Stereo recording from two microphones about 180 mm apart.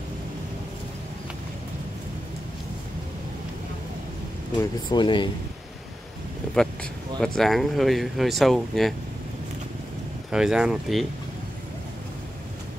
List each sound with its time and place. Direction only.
4.6 s speech: 25° left (ahead or behind)
6.5 s speech: 5° left (ahead or behind)
10.3 s speech: 5° right (ahead or behind)